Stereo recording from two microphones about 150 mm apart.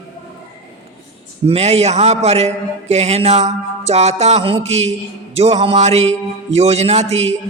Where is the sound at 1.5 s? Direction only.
45° right (ahead or behind).